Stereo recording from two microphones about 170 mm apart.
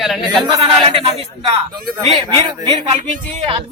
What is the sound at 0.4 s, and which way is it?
A man's voice, 30° right (ahead or behind).